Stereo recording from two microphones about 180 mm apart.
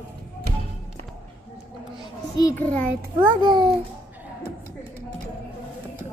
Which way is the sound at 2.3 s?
20° left (ahead or behind).